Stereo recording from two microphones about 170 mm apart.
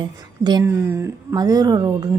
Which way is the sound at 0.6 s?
15° right (ahead or behind).